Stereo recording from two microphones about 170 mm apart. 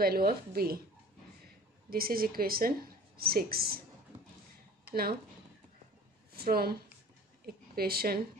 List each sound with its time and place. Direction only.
0.0 s a woman's voice: 60° right (ahead or behind)
1.9 s a woman's voice: 60° right (ahead or behind)
6.3 s a woman's voice: 65° right (ahead or behind)